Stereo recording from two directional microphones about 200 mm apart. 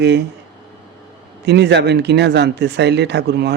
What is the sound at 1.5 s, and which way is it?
A man's voice, 60° right (ahead or behind).